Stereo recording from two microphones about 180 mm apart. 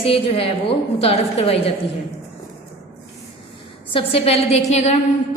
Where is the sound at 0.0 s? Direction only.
30° left (ahead or behind).